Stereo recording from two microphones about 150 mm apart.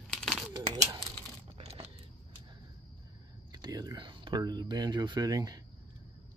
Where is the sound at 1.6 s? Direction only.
45° right (ahead or behind).